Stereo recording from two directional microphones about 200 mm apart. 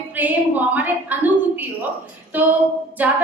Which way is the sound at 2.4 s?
10° right (ahead or behind).